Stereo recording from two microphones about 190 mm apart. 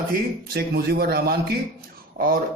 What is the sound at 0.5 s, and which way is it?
A man's voice, 55° right (ahead or behind).